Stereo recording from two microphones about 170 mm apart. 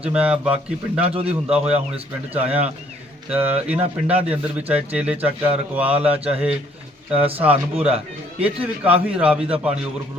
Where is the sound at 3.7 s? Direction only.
35° right (ahead or behind).